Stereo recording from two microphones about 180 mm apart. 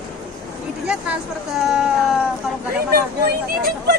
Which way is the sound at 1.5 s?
5° right (ahead or behind).